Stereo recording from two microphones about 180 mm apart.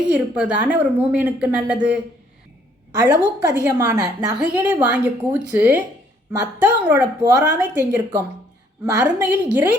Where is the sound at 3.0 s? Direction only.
15° right (ahead or behind).